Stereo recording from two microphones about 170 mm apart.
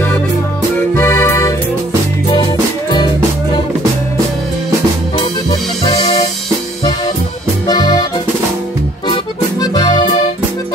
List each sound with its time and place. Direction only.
0.7 s music: 15° left (ahead or behind)
7.6 s accordion: 25° left (ahead or behind)